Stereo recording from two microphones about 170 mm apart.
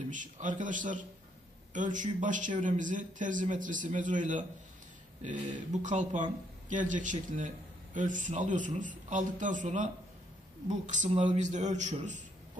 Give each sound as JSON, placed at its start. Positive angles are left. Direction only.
{"t": 0.1, "sound": "speech", "side_deg": -50}